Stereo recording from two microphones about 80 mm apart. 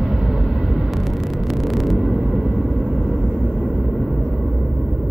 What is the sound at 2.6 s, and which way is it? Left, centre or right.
Vehicle, centre.